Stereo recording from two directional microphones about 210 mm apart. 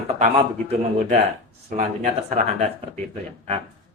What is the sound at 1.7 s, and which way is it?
Speech, 40° right (ahead or behind).